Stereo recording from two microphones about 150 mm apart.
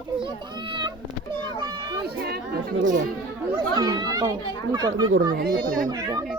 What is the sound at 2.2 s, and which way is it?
Speech, 90° right.